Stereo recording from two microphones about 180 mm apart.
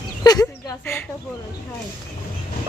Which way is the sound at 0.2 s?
20° left (ahead or behind).